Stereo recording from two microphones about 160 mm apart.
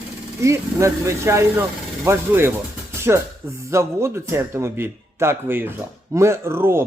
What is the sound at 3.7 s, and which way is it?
Speech, 15° right (ahead or behind).